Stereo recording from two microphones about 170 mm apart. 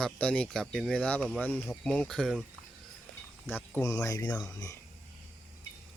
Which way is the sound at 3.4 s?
10° left (ahead or behind).